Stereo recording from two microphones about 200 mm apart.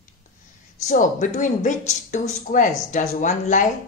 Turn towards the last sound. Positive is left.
turn(degrees=40)  # may be behind; listen again after turning